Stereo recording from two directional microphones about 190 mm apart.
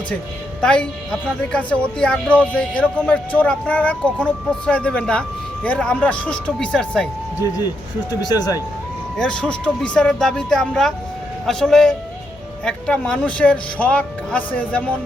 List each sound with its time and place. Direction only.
0.6 s speech: 5° left (ahead or behind)
2.0 s speech: 5° left (ahead or behind)
7.4 s speech: 20° left (ahead or behind)
9.1 s speech: 5° left (ahead or behind)